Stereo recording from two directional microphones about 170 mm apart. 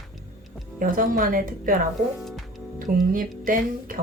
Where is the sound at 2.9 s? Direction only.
55° right (ahead or behind).